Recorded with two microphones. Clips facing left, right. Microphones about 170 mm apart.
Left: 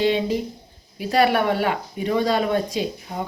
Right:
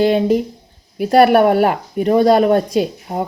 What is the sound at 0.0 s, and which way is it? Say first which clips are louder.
Speech: right 7 dB; 50° right (ahead or behind).